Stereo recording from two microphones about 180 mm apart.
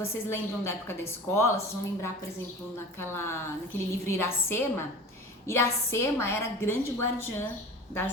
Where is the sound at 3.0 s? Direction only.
15° left (ahead or behind).